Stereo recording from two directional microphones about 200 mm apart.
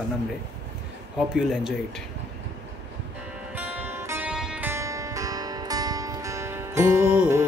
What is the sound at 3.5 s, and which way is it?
Music, 10° right (ahead or behind).